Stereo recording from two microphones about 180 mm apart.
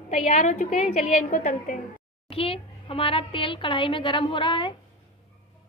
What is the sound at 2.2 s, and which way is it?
A child's voice, 30° left (ahead or behind).